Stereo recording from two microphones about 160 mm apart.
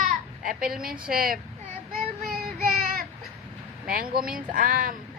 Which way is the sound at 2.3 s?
70° right (ahead or behind).